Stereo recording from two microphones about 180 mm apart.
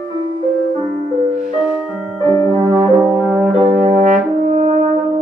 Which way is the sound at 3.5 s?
45° right (ahead or behind).